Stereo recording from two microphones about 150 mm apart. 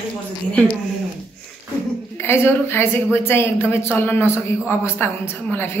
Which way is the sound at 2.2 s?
15° left (ahead or behind).